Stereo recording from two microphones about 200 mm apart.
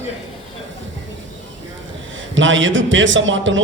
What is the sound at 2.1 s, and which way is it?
A man's voice, 70° right (ahead or behind).